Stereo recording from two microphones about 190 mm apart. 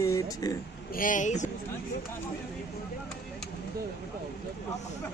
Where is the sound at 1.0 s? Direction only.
45° left (ahead or behind).